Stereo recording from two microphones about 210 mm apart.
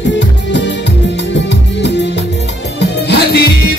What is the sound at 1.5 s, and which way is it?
Music, 55° left (ahead or behind).